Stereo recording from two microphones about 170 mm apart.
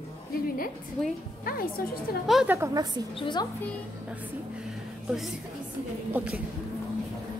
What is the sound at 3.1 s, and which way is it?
Speech, 25° left (ahead or behind).